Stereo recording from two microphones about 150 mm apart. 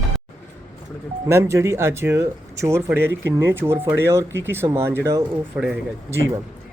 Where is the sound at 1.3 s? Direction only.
15° right (ahead or behind).